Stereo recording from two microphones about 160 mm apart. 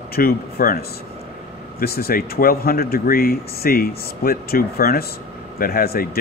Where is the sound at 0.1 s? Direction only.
70° left (ahead or behind).